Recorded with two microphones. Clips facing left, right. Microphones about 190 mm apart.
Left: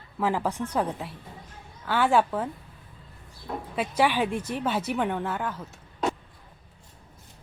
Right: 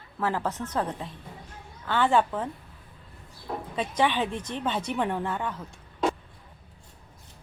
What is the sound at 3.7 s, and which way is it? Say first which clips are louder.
A woman's voice: left 2 dB; 10° left (ahead or behind).